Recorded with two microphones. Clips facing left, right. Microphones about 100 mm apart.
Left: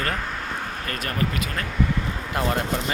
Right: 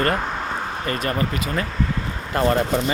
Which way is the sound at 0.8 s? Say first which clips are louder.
Right 4 dB; 5° right (ahead or behind).